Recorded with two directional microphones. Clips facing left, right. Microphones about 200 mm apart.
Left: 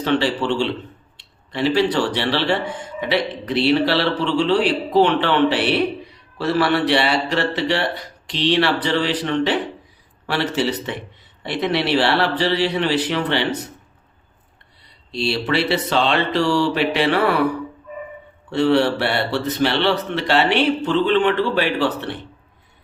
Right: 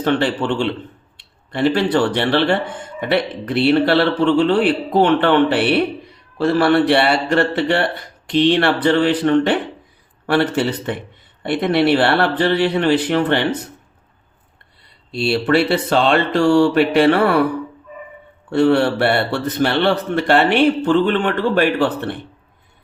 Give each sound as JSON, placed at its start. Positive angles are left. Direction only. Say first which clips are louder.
{"t": 0.0, "sound": "speech", "louder": "right 2 dB", "side_deg": -55}
{"t": 15.1, "sound": "speech", "louder": "right 5 dB", "side_deg": -55}
{"t": 18.5, "sound": "speech", "louder": "right 2 dB", "side_deg": -55}